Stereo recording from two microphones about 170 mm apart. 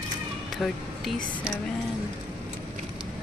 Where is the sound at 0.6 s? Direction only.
Centre (ahead or behind).